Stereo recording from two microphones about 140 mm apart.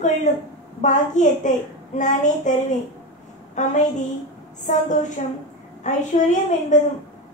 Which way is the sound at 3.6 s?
60° left (ahead or behind).